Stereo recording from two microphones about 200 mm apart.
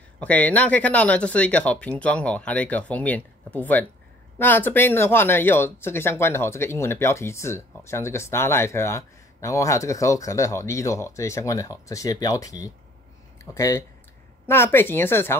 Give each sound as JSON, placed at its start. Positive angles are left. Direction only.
{"t": 0.2, "sound": "speech", "side_deg": 5}